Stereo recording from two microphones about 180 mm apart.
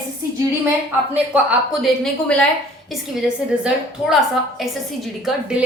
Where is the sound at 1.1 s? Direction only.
10° right (ahead or behind).